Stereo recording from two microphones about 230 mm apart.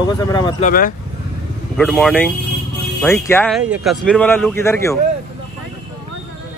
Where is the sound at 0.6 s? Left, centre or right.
Left.